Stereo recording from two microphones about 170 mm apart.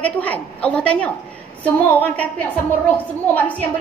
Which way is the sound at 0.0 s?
10° left (ahead or behind).